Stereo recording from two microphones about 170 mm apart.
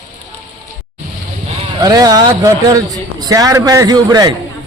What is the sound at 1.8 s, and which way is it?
Speech, 20° right (ahead or behind).